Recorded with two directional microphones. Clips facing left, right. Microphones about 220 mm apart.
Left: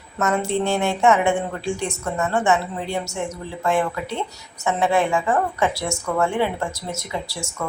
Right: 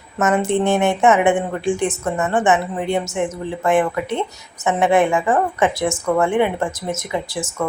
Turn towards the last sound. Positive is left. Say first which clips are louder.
# right 5 dB
turn(degrees=-20)  # may be behind; listen again after turning